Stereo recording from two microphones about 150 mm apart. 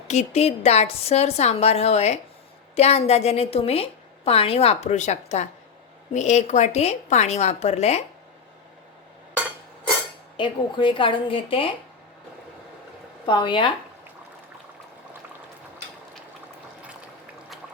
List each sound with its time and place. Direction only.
0.1 s a woman's voice: 50° left (ahead or behind)
10.3 s a woman's voice: 30° left (ahead or behind)
13.2 s a woman's voice: 30° left (ahead or behind)